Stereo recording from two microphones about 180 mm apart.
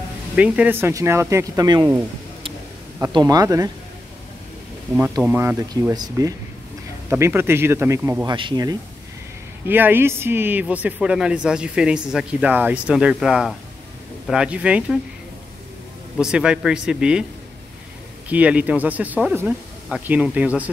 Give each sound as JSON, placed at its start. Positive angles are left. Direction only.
{"t": 0.4, "sound": "speech", "side_deg": -10}
{"t": 3.2, "sound": "speech", "side_deg": -20}
{"t": 4.9, "sound": "speech", "side_deg": -10}
{"t": 8.3, "sound": "speech", "side_deg": -25}
{"t": 9.7, "sound": "speech", "side_deg": -10}
{"t": 16.2, "sound": "speech", "side_deg": -5}
{"t": 18.3, "sound": "speech", "side_deg": -10}